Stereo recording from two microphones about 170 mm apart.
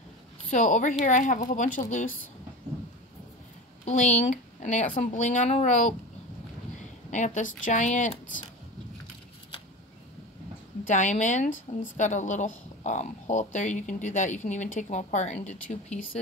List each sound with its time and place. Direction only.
0.5 s speech: 45° left (ahead or behind)
3.8 s speech: 45° left (ahead or behind)
7.1 s speech: 45° left (ahead or behind)
10.9 s speech: 45° left (ahead or behind)